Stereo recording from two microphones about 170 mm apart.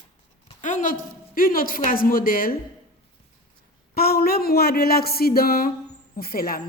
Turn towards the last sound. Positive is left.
turn(degrees=60)  # may be behind; listen again after turning